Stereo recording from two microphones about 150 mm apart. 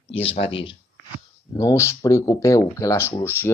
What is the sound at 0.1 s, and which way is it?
Speech, 40° left (ahead or behind).